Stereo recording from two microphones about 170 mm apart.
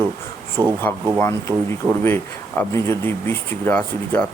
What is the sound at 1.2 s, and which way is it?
Speech, 15° left (ahead or behind).